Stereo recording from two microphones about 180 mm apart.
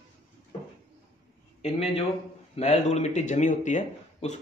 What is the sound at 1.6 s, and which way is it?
Speech, 35° left (ahead or behind).